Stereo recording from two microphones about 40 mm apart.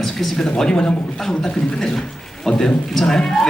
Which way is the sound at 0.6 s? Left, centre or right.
Centre.